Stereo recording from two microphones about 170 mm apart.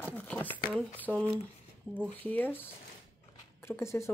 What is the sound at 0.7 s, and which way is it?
Speech, 5° left (ahead or behind).